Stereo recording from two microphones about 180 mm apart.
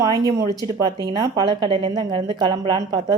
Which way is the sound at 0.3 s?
20° right (ahead or behind).